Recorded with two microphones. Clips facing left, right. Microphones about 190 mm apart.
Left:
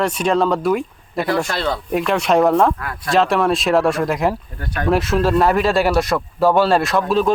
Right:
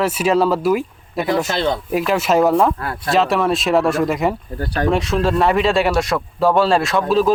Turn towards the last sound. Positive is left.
turn(degrees=0)  # may be behind; listen again after turning